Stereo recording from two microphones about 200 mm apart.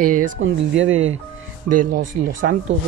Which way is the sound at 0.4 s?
75° right (ahead or behind).